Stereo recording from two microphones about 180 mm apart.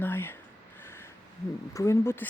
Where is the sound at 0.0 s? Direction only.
10° left (ahead or behind).